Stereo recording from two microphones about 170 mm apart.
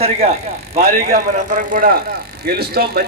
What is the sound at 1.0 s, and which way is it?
Speech, 55° right (ahead or behind).